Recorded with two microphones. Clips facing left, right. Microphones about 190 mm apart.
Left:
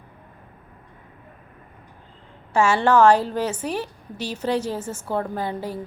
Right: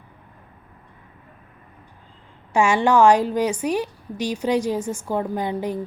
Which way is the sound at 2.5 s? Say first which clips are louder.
Even; 15° right (ahead or behind).